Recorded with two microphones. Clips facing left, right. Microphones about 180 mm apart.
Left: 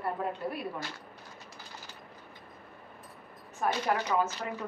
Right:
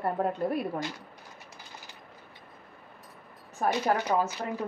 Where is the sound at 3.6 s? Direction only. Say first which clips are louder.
Right 3 dB; 35° right (ahead or behind).